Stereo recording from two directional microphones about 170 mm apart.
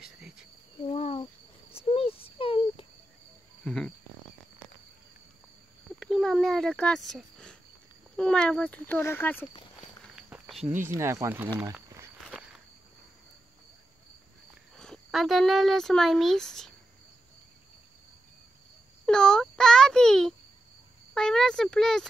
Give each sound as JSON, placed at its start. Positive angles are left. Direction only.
{"t": 0.0, "sound": "cricket", "side_deg": 0}
{"t": 0.8, "sound": "a sound", "side_deg": 35}
{"t": 1.2, "sound": "insect", "side_deg": 35}
{"t": 3.6, "sound": "cricket", "side_deg": 5}
{"t": 5.9, "sound": "speech", "side_deg": 0}
{"t": 7.1, "sound": "a sound", "side_deg": 5}
{"t": 8.2, "sound": "speech", "side_deg": 5}
{"t": 10.3, "sound": "cricket", "side_deg": -5}
{"t": 11.0, "sound": "speech", "side_deg": -15}
{"t": 11.6, "sound": "walk", "side_deg": -20}
{"t": 12.2, "sound": "walk", "side_deg": 0}
{"t": 14.5, "sound": "speech", "side_deg": 0}
{"t": 19.0, "sound": "a sound", "side_deg": 5}